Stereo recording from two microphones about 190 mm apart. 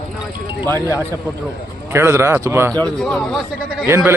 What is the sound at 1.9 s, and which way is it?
Speech, 15° right (ahead or behind).